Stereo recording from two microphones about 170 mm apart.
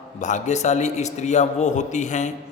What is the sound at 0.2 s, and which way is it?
A man's voice, 45° left (ahead or behind).